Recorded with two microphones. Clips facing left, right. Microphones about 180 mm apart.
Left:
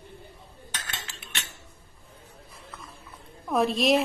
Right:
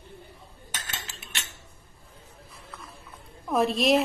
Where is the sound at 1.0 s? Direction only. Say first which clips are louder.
Left 1 dB; 45° right (ahead or behind).